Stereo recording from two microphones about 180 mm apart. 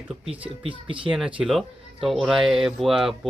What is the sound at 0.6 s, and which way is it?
Speech, 30° right (ahead or behind).